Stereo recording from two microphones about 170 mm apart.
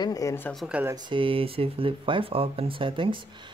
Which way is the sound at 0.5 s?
5° right (ahead or behind).